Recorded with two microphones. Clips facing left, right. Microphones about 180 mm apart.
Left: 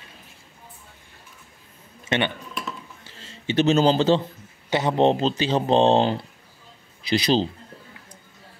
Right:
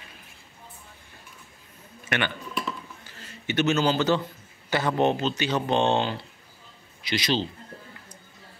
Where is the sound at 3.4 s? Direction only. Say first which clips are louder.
Left 5 dB; 30° left (ahead or behind).